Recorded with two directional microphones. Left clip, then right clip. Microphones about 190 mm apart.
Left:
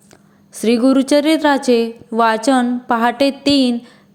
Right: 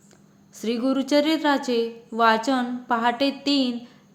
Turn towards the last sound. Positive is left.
turn(degrees=45)  # may be behind; listen again after turning